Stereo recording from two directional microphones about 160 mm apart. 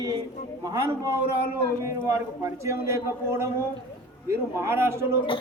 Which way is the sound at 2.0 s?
15° right (ahead or behind).